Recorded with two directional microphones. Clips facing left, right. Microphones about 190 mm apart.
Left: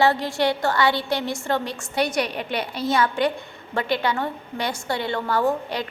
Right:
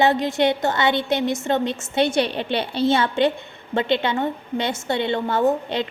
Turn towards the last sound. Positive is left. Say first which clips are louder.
# right 3 dB
turn(degrees=-25)  # may be behind; listen again after turning